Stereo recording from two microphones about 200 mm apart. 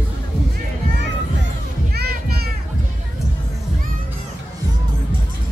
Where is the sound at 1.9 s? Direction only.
50° right (ahead or behind).